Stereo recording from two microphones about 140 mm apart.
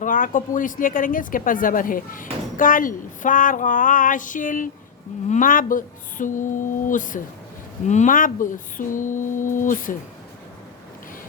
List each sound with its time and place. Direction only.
0.0 s speech: 70° left (ahead or behind)